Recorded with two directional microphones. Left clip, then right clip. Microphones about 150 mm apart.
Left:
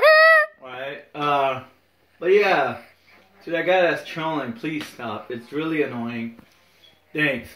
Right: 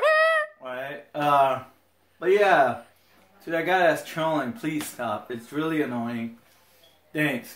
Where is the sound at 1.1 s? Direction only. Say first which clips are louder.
Even; 25° right (ahead or behind).